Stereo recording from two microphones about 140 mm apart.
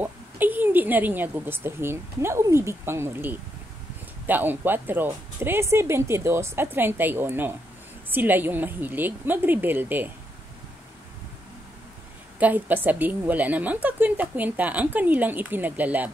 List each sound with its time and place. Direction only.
0.0 s speech: 15° right (ahead or behind)
12.4 s speech: 10° right (ahead or behind)